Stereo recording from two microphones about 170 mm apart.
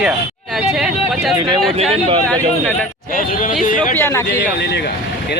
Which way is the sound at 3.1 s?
50° left (ahead or behind).